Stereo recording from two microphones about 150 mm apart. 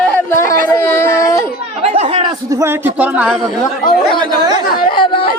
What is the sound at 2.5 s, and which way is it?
Speech, 15° right (ahead or behind).